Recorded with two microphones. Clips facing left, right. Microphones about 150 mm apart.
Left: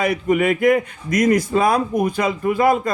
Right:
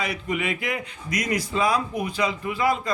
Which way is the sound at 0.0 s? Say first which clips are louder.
Left 10 dB; 50° left (ahead or behind).